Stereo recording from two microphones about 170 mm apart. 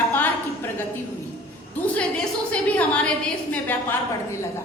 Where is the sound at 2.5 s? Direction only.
10° left (ahead or behind).